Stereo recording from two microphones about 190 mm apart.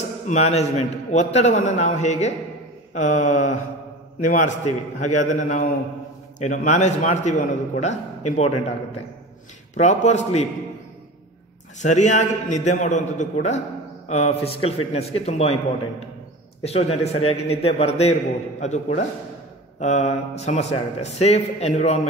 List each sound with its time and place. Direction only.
0.3 s a man's voice: 35° left (ahead or behind)
9.8 s a man's voice: 35° left (ahead or behind)
11.8 s a man's voice: 40° left (ahead or behind)
16.6 s a man's voice: 35° left (ahead or behind)